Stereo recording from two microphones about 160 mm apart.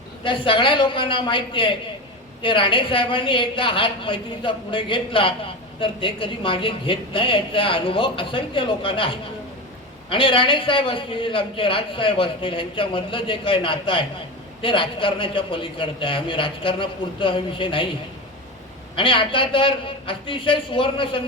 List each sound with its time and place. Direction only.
0.3 s a man's voice: 30° left (ahead or behind)
18.9 s a man's voice: 30° left (ahead or behind)